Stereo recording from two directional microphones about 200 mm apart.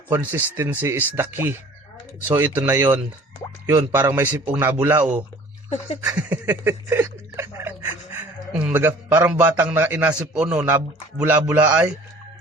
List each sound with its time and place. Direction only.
0.1 s speech: 10° right (ahead or behind)